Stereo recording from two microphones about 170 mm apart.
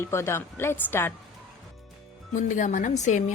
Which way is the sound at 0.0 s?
15° left (ahead or behind).